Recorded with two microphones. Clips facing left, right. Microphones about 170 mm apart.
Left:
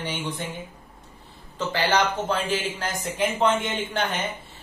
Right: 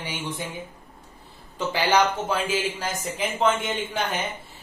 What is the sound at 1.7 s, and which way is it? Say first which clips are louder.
Speech: right 2 dB; 10° right (ahead or behind).